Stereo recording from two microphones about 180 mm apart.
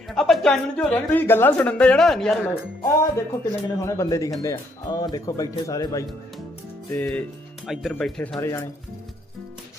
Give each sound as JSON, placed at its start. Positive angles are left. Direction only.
{"t": 0.1, "sound": "a woman's voice", "side_deg": 0}
{"t": 2.8, "sound": "speech", "side_deg": 15}
{"t": 7.7, "sound": "a woman's voice", "side_deg": 0}
{"t": 8.4, "sound": "speech", "side_deg": 15}